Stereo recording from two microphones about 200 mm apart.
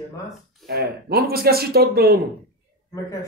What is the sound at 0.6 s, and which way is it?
Speech, 50° right (ahead or behind).